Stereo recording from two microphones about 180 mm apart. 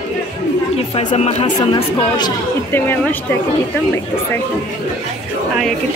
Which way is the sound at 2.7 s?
10° left (ahead or behind).